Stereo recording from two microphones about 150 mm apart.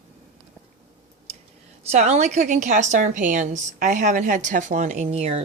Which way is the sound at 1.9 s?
50° right (ahead or behind).